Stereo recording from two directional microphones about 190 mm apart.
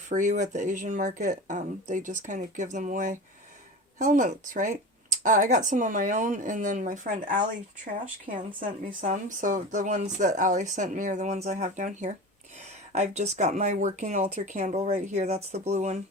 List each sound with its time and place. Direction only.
0.1 s speech: 40° right (ahead or behind)
8.5 s speech: 45° right (ahead or behind)